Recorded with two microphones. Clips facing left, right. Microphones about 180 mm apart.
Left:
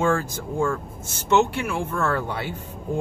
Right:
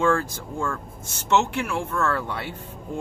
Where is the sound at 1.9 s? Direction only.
15° left (ahead or behind).